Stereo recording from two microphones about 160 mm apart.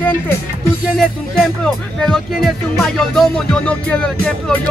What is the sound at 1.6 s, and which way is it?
Speech, 5° left (ahead or behind).